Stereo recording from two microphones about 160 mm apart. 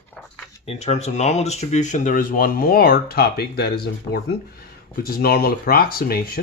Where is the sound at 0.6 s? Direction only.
40° left (ahead or behind); by 6.4 s 70° left (ahead or behind).